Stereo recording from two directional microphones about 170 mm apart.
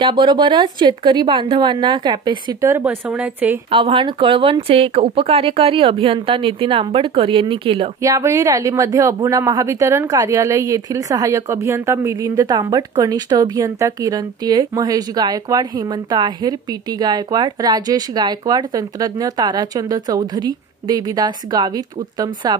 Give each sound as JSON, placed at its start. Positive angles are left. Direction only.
{"t": 0.0, "sound": "speech", "side_deg": -25}
{"t": 3.7, "sound": "speech", "side_deg": -30}
{"t": 8.0, "sound": "speech", "side_deg": -15}